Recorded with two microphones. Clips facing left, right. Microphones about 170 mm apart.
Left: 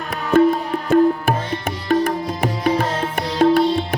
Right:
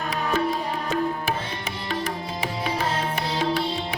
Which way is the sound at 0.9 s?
55° left (ahead or behind).